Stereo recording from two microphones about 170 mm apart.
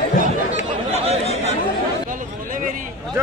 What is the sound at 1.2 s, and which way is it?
Chatter, 40° left (ahead or behind).